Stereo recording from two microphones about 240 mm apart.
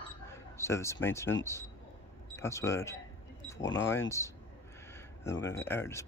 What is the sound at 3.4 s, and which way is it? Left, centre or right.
Vehicle, centre.